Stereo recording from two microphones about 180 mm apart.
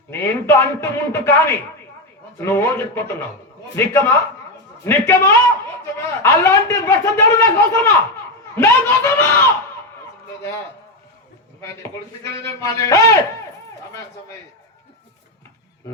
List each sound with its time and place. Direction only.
0.1 s a man's voice: 15° left (ahead or behind)
11.6 s a man's voice: 15° left (ahead or behind)